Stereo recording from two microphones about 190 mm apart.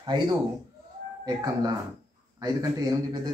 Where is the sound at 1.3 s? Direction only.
20° right (ahead or behind).